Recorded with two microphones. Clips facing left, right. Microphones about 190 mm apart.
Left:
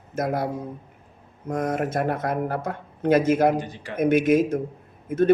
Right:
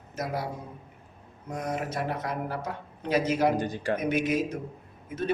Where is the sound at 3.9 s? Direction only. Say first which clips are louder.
Left 10 dB; 50° left (ahead or behind).